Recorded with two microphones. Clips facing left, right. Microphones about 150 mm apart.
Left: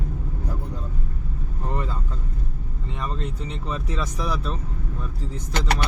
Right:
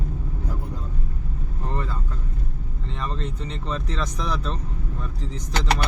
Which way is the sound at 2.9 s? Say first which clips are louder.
Even; 10° left (ahead or behind).